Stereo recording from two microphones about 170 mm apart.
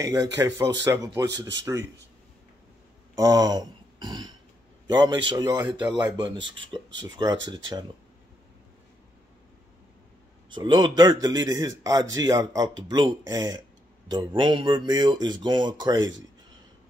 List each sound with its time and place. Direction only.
0.0 s a man's voice: 20° right (ahead or behind)
3.2 s a man's voice: 20° right (ahead or behind)
7.0 s a man's voice: 25° right (ahead or behind)
10.5 s a man's voice: 25° right (ahead or behind)